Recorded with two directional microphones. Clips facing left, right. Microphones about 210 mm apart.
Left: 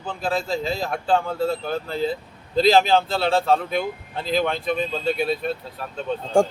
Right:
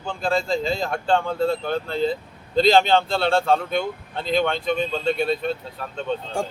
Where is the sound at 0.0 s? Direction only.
5° left (ahead or behind).